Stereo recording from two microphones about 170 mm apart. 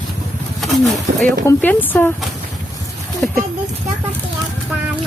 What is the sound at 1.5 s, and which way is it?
Speech, 10° left (ahead or behind).